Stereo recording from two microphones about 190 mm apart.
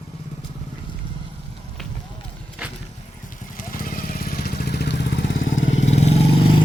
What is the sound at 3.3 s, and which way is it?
Vehicle, 45° left (ahead or behind).